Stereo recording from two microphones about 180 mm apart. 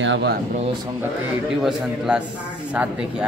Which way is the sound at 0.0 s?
80° right.